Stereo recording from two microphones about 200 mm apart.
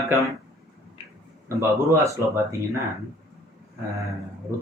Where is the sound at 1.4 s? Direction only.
15° right (ahead or behind).